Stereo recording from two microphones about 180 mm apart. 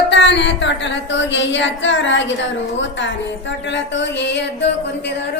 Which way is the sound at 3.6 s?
85° left.